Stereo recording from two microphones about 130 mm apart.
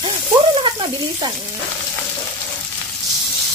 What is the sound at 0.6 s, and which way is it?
Speech, 35° right (ahead or behind).